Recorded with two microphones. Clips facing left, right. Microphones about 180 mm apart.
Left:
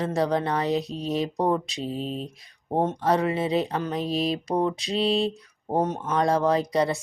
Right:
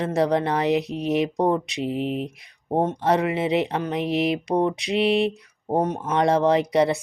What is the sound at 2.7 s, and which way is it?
Speech, 20° right (ahead or behind).